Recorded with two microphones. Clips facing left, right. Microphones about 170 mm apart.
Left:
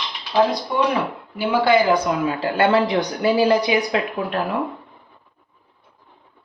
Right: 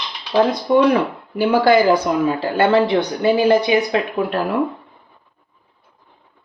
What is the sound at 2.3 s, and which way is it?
Speech, 30° right (ahead or behind).